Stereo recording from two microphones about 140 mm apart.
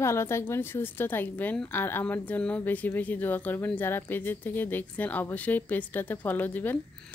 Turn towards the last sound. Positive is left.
turn(degrees=15)  # may be behind; listen again after turning